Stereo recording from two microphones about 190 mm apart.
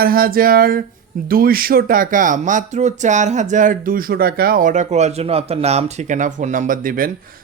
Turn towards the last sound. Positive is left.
turn(degrees=-50)  # may be behind; listen again after turning